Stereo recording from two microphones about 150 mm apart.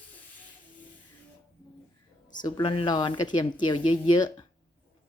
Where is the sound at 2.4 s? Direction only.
30° left (ahead or behind).